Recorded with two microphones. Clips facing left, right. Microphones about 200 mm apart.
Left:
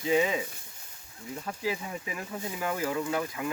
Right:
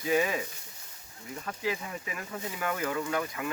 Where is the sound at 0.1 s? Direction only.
20° left (ahead or behind).